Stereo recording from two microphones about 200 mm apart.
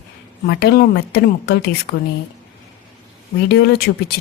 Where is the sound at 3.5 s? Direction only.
55° left (ahead or behind).